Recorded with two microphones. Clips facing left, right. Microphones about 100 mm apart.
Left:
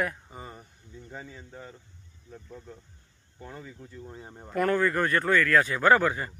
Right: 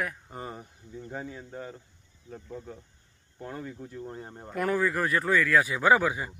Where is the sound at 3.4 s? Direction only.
Centre (ahead or behind).